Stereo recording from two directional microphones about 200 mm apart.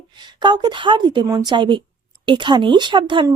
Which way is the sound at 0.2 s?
20° right (ahead or behind).